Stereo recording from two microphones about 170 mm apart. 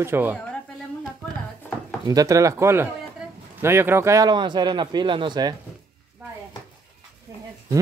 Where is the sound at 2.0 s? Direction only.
20° right (ahead or behind).